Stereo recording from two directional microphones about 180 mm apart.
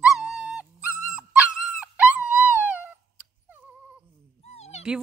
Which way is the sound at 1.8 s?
5° right (ahead or behind).